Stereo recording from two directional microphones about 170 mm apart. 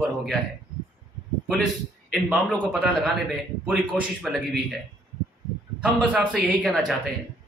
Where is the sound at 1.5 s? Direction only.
5° left (ahead or behind).